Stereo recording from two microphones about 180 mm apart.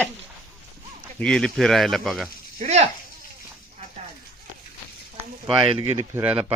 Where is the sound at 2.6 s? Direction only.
40° right (ahead or behind).